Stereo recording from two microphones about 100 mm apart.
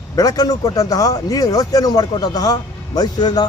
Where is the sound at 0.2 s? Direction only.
35° left (ahead or behind).